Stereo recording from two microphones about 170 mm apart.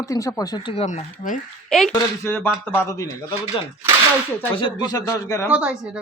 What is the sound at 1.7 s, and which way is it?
Speech, 5° left (ahead or behind).